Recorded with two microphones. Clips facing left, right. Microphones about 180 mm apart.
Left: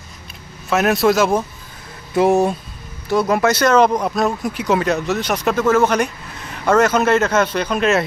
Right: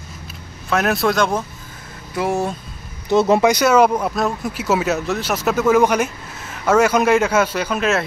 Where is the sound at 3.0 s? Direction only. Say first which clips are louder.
Right 2 dB; 25° right (ahead or behind).